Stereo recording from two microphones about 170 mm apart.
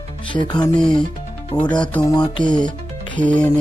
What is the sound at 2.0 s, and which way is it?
Speech, 25° left (ahead or behind).